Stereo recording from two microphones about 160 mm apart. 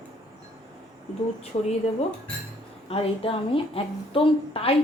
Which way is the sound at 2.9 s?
35° left (ahead or behind).